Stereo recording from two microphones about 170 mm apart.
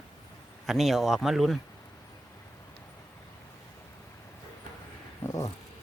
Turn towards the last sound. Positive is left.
turn(degrees=20)  # may be behind; listen again after turning